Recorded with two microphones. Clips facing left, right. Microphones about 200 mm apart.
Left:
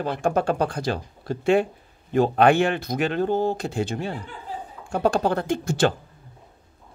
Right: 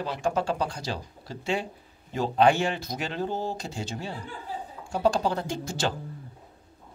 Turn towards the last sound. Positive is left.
turn(degrees=55)  # may be behind; listen again after turning